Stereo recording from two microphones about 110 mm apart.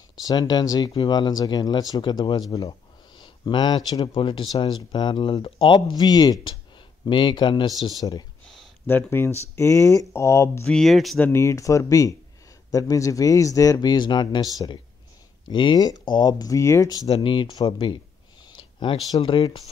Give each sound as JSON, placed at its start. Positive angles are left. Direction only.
{"t": 0.2, "sound": "speech", "side_deg": 35}
{"t": 8.8, "sound": "speech", "side_deg": 20}
{"t": 10.7, "sound": "speech", "side_deg": 0}
{"t": 11.1, "sound": "speech", "side_deg": 15}
{"t": 11.4, "sound": "speech", "side_deg": 30}
{"t": 17.2, "sound": "speech", "side_deg": 50}
{"t": 18.6, "sound": "a sound", "side_deg": 50}
{"t": 19.2, "sound": "speech", "side_deg": 50}